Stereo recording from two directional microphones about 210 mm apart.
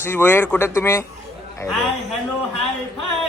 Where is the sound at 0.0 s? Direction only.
10° left (ahead or behind).